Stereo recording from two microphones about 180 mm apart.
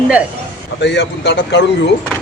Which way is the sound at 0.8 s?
75° left (ahead or behind).